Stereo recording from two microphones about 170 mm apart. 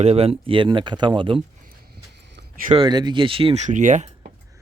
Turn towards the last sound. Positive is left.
turn(degrees=-45)  # may be behind; listen again after turning